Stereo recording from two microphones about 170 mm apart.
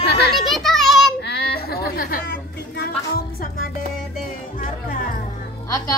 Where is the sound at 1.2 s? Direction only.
70° left (ahead or behind).